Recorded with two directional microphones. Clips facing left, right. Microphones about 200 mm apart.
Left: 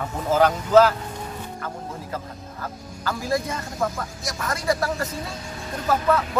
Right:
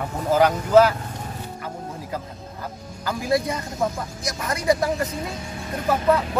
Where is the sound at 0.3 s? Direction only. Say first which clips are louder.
Right 1 dB; 15° right (ahead or behind).